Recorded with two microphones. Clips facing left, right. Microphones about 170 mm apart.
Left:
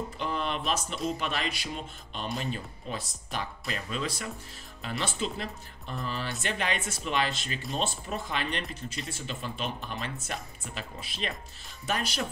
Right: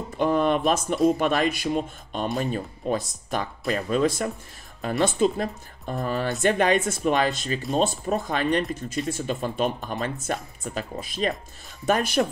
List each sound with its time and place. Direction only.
0.2 s speech: 50° right (ahead or behind)